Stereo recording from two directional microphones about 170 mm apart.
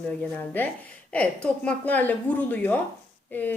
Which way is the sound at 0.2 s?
10° left (ahead or behind).